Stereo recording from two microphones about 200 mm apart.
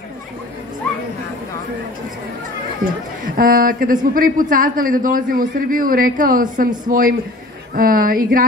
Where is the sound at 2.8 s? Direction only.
45° right (ahead or behind).